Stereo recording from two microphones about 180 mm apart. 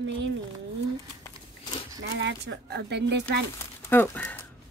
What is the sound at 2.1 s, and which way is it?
Speech, 80° right.